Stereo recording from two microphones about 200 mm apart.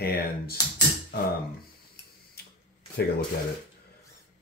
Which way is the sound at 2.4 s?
50° left (ahead or behind).